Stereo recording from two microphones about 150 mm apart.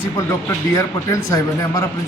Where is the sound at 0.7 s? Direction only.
20° left (ahead or behind).